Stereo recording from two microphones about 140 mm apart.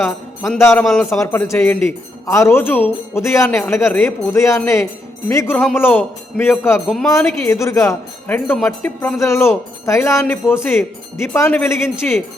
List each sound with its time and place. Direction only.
0.7 s a man's voice: 5° left (ahead or behind)
1.2 s a man's voice: 20° left (ahead or behind)
6.8 s a man's voice: centre (ahead or behind)
7.1 s a man's voice: 20° left (ahead or behind)